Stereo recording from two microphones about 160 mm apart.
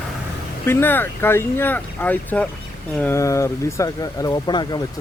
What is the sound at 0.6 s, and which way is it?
Speech, 15° left (ahead or behind).